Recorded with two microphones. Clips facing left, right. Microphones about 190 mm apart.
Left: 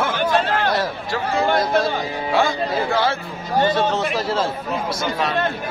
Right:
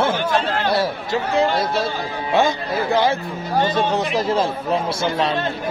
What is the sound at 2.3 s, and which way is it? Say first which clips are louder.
A man's voice: right 1 dB; 20° right (ahead or behind).